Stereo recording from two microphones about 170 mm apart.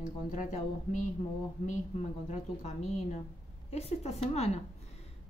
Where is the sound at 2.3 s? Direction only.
40° left (ahead or behind).